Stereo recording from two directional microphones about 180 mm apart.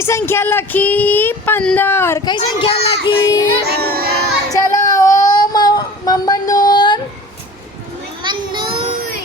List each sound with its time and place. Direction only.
0.0 s speech: 15° left (ahead or behind)
3.7 s music: 60° right (ahead or behind)
4.5 s child singing: 20° left (ahead or behind)
8.2 s a sound: 25° right (ahead or behind)